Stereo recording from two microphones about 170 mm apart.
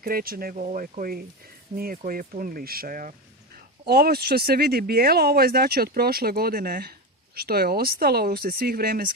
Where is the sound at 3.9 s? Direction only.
65° right (ahead or behind).